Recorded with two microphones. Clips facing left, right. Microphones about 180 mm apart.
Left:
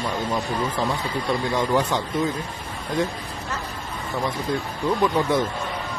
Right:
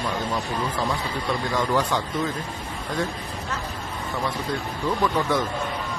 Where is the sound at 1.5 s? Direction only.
20° left (ahead or behind).